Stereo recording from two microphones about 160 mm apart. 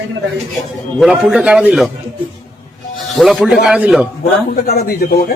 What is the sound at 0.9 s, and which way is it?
Speech, centre (ahead or behind).